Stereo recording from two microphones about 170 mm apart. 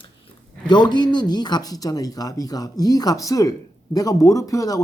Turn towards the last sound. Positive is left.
turn(degrees=20)  # may be behind; listen again after turning